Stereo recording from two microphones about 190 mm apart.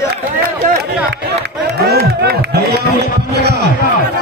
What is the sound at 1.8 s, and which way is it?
Music, 55° right (ahead or behind).